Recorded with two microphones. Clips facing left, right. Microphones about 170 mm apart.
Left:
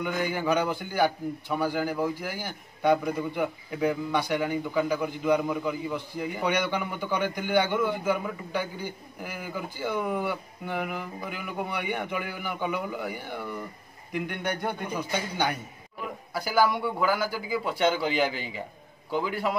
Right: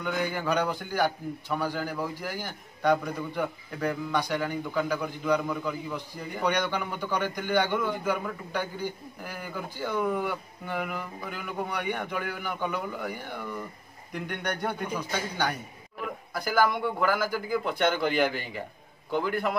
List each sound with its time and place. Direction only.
0.0 s a man's voice: 10° left (ahead or behind)
15.0 s a man's voice: 10° left (ahead or behind)
18.3 s a man's voice: 55° right (ahead or behind)